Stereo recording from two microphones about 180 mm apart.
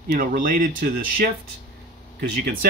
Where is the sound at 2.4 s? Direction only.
50° right (ahead or behind).